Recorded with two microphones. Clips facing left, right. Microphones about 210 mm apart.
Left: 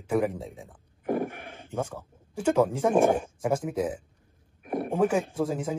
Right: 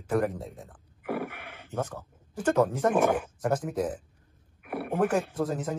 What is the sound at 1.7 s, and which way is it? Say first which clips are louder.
Speech: left 1 dB; 10° left (ahead or behind).